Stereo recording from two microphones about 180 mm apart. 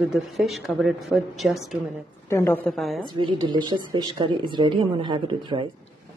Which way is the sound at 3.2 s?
25° right (ahead or behind).